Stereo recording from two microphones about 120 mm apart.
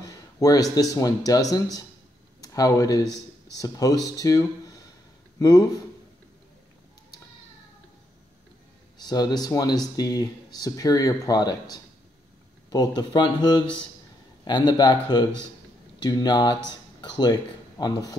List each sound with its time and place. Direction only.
0.0 s speech: 30° left (ahead or behind)
8.9 s speech: 35° left (ahead or behind)
12.6 s speech: 30° left (ahead or behind)